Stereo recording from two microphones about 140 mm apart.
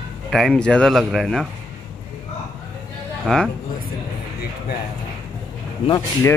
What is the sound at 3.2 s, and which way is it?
Speech, 5° left (ahead or behind).